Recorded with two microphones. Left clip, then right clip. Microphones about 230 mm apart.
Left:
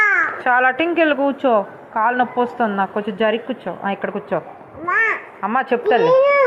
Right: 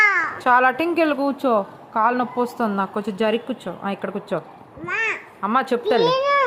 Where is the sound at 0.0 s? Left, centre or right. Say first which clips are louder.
Left 2 dB; centre.